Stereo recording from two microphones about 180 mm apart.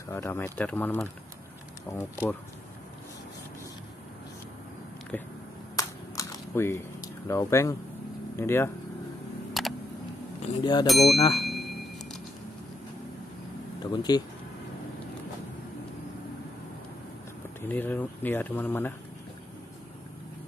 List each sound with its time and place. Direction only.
0.1 s speech: 15° left (ahead or behind)
5.1 s speech: 10° left (ahead or behind)
5.8 s a sound: 15° left (ahead or behind)
8.4 s speech: 15° left (ahead or behind)
9.5 s a sound: centre (ahead or behind)
10.4 s speech: 25° left (ahead or behind)
10.9 s speech: centre (ahead or behind)
11.4 s a sound: centre (ahead or behind)
13.8 s speech: 25° left (ahead or behind)
17.6 s speech: 10° left (ahead or behind)